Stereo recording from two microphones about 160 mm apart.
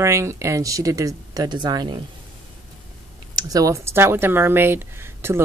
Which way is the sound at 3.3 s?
20° right (ahead or behind).